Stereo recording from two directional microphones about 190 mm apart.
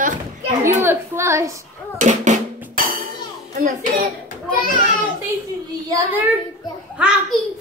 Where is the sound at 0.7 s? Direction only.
15° right (ahead or behind).